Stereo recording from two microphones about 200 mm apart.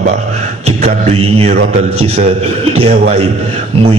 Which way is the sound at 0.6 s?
30° right (ahead or behind).